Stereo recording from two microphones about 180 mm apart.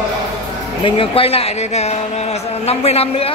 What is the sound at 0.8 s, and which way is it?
Speech, 30° left (ahead or behind).